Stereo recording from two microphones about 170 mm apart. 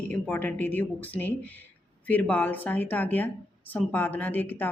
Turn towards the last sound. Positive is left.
turn(degrees=10)  # may be behind; listen again after turning